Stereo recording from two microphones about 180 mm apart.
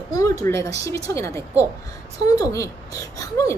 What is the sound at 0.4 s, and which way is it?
Speech, 15° left (ahead or behind).